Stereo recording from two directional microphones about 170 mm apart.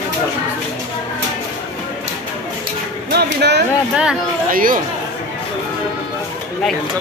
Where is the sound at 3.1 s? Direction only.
75° right (ahead or behind).